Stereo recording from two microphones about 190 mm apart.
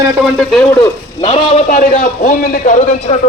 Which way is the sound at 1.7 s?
45° left (ahead or behind).